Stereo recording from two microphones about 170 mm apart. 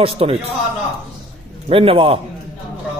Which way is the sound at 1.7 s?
35° right (ahead or behind).